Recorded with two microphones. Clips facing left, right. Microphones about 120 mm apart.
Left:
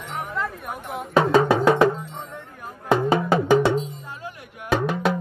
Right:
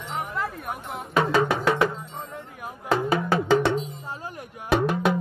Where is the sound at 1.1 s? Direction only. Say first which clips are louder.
Left 4 dB; 30° left (ahead or behind).